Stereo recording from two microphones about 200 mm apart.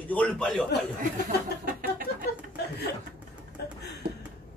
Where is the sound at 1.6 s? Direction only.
45° right (ahead or behind).